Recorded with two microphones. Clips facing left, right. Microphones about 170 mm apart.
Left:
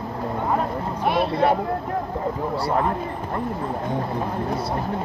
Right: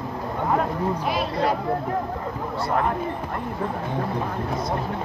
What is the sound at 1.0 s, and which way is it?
Speech, 60° left (ahead or behind).